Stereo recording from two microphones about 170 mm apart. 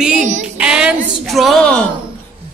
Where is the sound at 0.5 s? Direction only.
5° right (ahead or behind).